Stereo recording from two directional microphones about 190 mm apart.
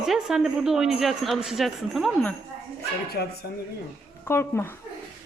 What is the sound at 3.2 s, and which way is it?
Speech, 55° left (ahead or behind).